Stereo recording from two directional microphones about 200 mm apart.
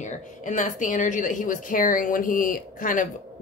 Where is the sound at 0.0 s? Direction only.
40° left (ahead or behind).